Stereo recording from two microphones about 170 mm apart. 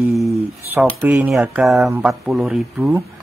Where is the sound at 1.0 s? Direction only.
15° right (ahead or behind).